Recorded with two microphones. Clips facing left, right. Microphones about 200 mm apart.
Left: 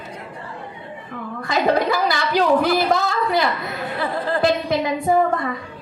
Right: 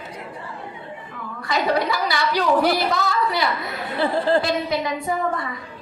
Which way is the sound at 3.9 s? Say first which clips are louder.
Right 5 dB; 30° right (ahead or behind).